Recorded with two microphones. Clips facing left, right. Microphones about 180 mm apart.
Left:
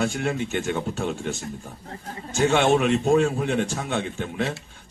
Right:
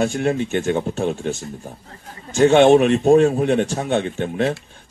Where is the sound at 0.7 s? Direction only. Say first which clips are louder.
Right 6 dB; 20° right (ahead or behind).